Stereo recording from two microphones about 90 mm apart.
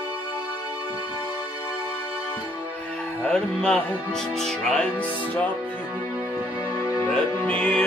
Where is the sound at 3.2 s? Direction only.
10° left (ahead or behind).